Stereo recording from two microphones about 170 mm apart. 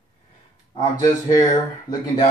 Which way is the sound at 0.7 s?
25° left (ahead or behind).